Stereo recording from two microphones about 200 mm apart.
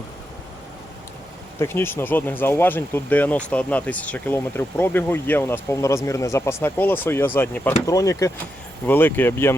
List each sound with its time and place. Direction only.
1.5 s speech: 10° left (ahead or behind)